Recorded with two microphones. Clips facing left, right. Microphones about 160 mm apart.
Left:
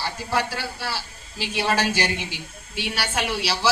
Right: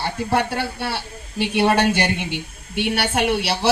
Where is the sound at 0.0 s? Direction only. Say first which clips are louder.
Right 5 dB; 55° right (ahead or behind).